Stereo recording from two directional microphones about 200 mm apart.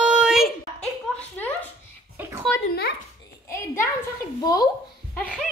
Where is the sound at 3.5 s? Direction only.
15° left (ahead or behind).